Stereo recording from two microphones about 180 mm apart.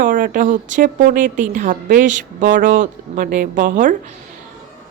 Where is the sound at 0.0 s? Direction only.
45° right (ahead or behind).